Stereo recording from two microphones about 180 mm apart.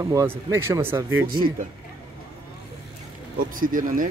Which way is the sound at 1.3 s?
55° right (ahead or behind).